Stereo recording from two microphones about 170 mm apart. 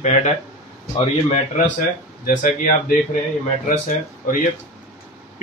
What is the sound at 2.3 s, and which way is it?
Speech, 50° left (ahead or behind).